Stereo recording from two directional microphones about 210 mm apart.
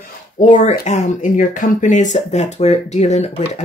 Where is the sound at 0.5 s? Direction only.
35° left (ahead or behind).